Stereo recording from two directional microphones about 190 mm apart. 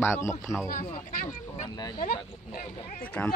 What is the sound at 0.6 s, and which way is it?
Speech, 45° left (ahead or behind).